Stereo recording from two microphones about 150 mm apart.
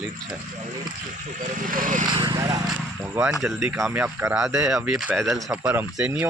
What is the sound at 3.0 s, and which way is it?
Speech, 15° right (ahead or behind).